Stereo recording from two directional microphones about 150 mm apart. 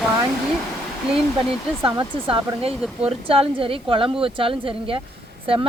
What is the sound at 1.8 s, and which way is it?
Speech, 35° right (ahead or behind).